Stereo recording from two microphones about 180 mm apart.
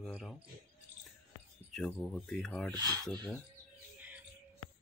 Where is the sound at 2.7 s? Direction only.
20° right (ahead or behind).